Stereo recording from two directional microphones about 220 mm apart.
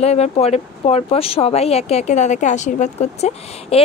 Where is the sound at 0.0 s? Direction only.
30° left (ahead or behind).